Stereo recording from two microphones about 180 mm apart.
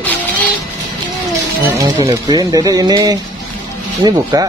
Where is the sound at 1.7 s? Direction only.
20° right (ahead or behind).